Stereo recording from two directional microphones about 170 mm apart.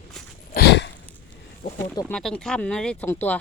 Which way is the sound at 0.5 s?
85° left.